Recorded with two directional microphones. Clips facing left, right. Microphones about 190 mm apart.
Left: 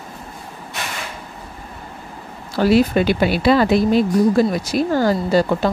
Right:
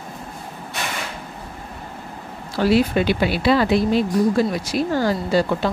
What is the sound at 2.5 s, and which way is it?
Speech, 45° left (ahead or behind).